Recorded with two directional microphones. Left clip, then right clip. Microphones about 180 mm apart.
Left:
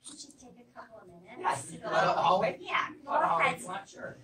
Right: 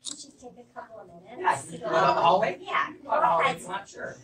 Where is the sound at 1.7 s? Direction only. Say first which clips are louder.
Right 4 dB; centre (ahead or behind).